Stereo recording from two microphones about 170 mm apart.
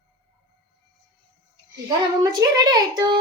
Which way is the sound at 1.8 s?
25° right (ahead or behind).